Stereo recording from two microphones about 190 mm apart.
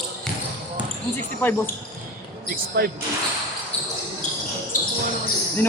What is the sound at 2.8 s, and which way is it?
Speech, 55° right (ahead or behind).